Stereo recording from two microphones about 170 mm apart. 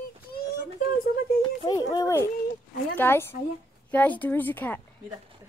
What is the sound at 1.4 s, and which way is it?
Speech, 30° left (ahead or behind).